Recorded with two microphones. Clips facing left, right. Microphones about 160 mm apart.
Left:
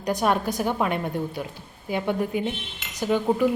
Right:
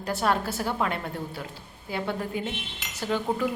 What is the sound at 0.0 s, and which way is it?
A woman's voice, 15° left (ahead or behind).